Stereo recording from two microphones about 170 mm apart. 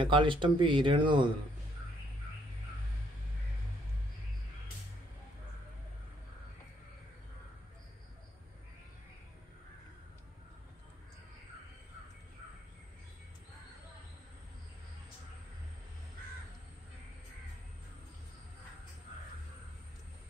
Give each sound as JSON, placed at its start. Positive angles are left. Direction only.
{"t": 0.0, "sound": "speech", "side_deg": -30}